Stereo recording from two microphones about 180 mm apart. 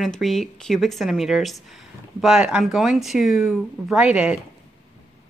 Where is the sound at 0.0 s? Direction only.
Centre (ahead or behind).